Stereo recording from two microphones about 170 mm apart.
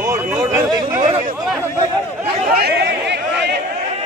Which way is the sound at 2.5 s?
70° right (ahead or behind).